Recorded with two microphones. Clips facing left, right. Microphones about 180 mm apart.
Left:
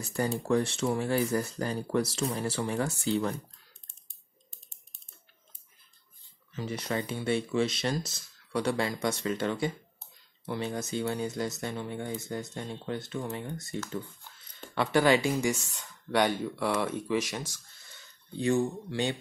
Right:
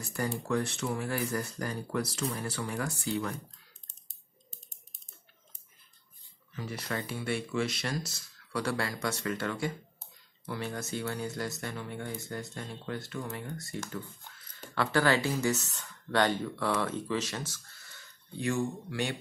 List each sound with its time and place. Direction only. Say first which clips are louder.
0.0 s speech: left 3 dB; 25° left (ahead or behind)
3.8 s typing: even; 40° right (ahead or behind)
6.5 s speech: left 4 dB; 20° left (ahead or behind)
14.8 s speech: left 3 dB; 15° left (ahead or behind)